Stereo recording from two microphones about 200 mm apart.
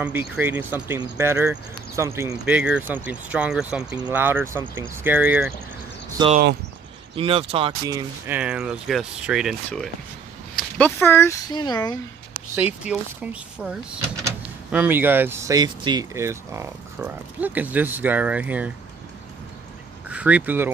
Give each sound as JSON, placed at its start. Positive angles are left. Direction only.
{"t": 0.0, "sound": "speech", "side_deg": -10}
{"t": 7.2, "sound": "speech", "side_deg": -30}
{"t": 8.4, "sound": "speech", "side_deg": -5}
{"t": 12.5, "sound": "speech", "side_deg": -5}
{"t": 20.1, "sound": "speech", "side_deg": -5}